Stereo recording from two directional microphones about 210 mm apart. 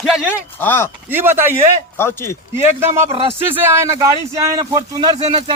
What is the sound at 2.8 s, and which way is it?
A man's voice, 10° right (ahead or behind).